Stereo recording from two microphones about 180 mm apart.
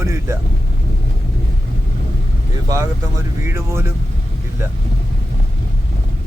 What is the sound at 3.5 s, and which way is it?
Speech, 15° right (ahead or behind).